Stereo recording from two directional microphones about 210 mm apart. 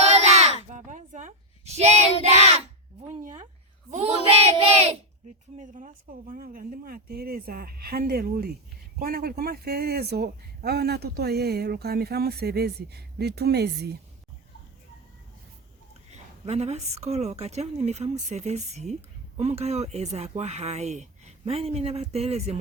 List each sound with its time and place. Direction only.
0.0 s a sound: 30° right (ahead or behind)
2.2 s child singing: 30° right (ahead or behind)
4.3 s child singing: 30° right (ahead or behind)
5.5 s speech: 35° right (ahead or behind)
16.5 s speech: 30° right (ahead or behind)